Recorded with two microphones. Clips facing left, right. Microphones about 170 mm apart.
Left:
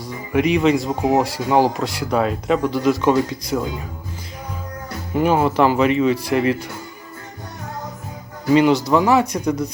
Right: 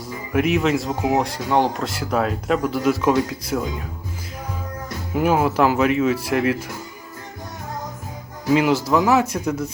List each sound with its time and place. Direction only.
0.3 s speech: 5° right (ahead or behind)
5.1 s speech: 5° right (ahead or behind)
8.4 s speech: 5° right (ahead or behind)